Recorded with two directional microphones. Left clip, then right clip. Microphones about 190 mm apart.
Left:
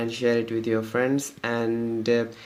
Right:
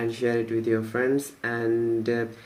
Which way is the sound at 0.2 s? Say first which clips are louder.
Left 4 dB; 45° left (ahead or behind).